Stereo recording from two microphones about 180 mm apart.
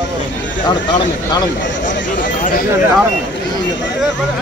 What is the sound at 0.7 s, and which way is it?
Speech, 25° left (ahead or behind).